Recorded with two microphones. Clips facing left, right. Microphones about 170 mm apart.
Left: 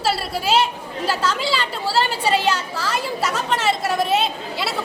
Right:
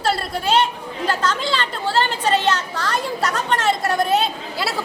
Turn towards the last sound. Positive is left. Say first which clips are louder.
# even
turn(degrees=0)  # may be behind; listen again after turning